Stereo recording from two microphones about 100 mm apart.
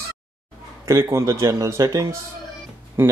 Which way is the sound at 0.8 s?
30° right (ahead or behind).